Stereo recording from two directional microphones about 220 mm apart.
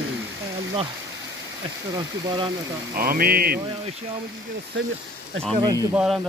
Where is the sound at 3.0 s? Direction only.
45° right (ahead or behind).